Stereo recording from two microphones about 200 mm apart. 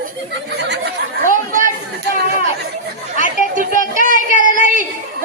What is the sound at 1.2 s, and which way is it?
Chatter, 40° right (ahead or behind).